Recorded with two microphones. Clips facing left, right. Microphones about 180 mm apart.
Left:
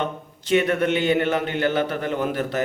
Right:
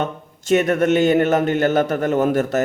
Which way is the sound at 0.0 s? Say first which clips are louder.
Right 3 dB; 45° right (ahead or behind).